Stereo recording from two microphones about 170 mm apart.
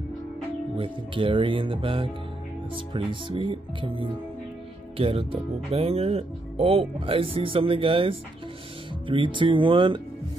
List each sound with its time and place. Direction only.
0.7 s speech: 30° right (ahead or behind)